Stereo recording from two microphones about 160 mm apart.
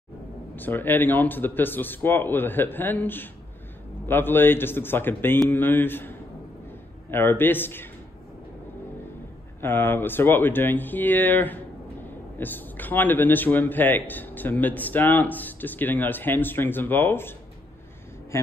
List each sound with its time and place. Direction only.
0.6 s a man's voice: 10° left (ahead or behind)
9.6 s a man's voice: 15° left (ahead or behind)